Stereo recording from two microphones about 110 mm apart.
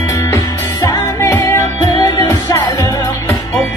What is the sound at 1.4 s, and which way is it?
Music, 30° left (ahead or behind).